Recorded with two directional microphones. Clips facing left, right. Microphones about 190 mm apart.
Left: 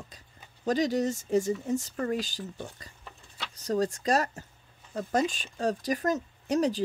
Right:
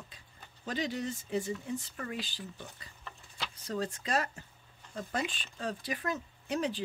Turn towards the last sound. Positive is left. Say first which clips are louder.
# left 7 dB
turn(degrees=40)  # may be behind; listen again after turning